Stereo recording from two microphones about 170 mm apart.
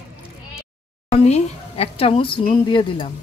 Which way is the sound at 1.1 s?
40° left (ahead or behind).